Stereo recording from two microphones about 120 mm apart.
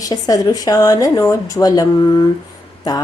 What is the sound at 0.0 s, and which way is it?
Speech, 30° left (ahead or behind).